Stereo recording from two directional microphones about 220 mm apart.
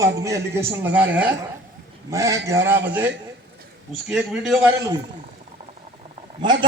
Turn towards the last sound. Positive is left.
turn(degrees=-20)  # may be behind; listen again after turning